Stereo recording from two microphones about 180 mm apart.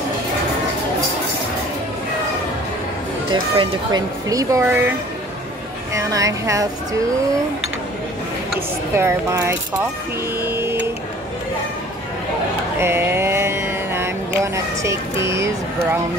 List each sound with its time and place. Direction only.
3.5 s speech: 20° right (ahead or behind)
5.9 s speech: 20° right (ahead or behind)
8.5 s speech: 15° right (ahead or behind)
10.4 s printer: 15° right (ahead or behind)
12.7 s mantra: 15° right (ahead or behind)